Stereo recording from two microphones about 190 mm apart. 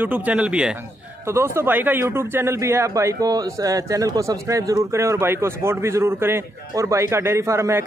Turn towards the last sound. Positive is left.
turn(degrees=-15)  # may be behind; listen again after turning